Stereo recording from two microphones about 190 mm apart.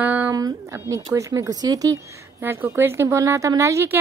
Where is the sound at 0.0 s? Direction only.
10° right (ahead or behind).